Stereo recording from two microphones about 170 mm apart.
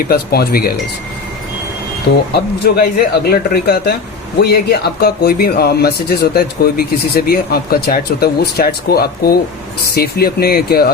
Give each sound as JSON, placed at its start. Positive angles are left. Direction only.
{"t": 0.1, "sound": "speech", "side_deg": 60}
{"t": 2.3, "sound": "speech", "side_deg": 70}